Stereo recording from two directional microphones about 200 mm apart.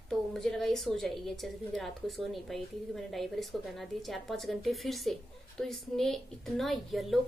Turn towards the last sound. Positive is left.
turn(degrees=0)  # may be behind; listen again after turning